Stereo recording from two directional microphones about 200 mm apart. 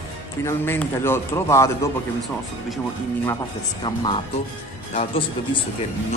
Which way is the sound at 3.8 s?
25° left (ahead or behind).